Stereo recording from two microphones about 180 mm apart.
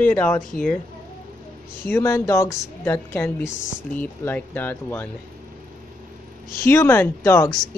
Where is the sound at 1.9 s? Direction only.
15° left (ahead or behind).